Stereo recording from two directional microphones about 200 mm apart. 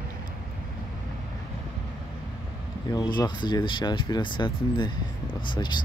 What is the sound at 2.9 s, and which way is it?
Speech, 20° left (ahead or behind).